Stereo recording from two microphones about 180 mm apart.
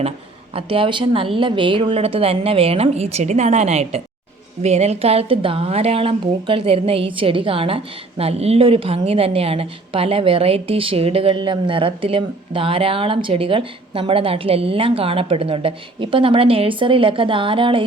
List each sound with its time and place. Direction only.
0.5 s a woman's voice: 30° right (ahead or behind)